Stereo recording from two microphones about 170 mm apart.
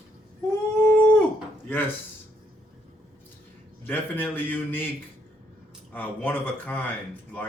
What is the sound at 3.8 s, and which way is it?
Speech, 10° left (ahead or behind).